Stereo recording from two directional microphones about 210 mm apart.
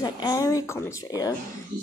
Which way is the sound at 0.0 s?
15° left (ahead or behind).